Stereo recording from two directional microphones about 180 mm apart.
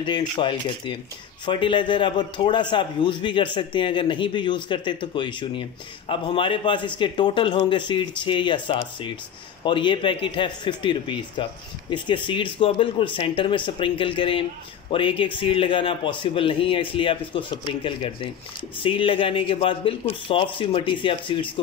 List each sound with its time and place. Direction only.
0.0 s a man's voice: 25° left (ahead or behind)